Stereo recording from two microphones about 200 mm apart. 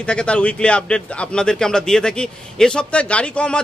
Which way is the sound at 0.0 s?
5° left (ahead or behind).